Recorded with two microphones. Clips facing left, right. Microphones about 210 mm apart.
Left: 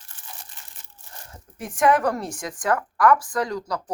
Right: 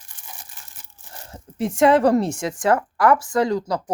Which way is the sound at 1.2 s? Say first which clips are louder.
Right 11 dB; 25° right (ahead or behind).